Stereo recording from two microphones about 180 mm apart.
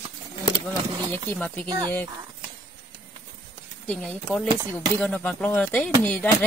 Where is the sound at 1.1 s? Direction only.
10° left (ahead or behind).